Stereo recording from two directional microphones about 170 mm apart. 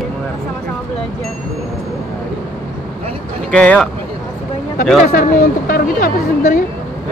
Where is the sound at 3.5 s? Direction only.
5° left (ahead or behind).